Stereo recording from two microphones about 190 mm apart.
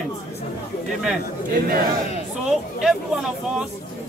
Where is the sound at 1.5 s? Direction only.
50° right (ahead or behind).